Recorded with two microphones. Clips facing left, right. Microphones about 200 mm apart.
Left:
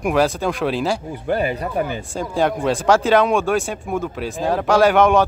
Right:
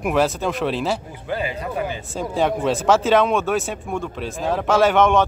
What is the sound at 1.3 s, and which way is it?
Speech, 55° left (ahead or behind).